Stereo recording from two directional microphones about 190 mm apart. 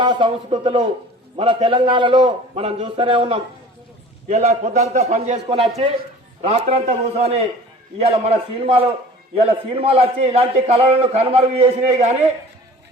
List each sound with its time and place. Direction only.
0.0 s a man's voice: 25° right (ahead or behind)